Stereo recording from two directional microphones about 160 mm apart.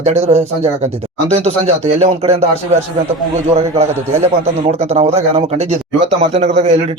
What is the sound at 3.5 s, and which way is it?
Speech, 40° right (ahead or behind).